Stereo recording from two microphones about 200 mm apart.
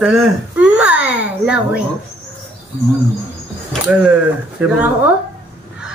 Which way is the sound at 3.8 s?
5° right (ahead or behind).